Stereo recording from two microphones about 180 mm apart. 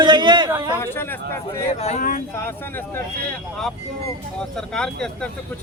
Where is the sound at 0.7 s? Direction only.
15° left (ahead or behind).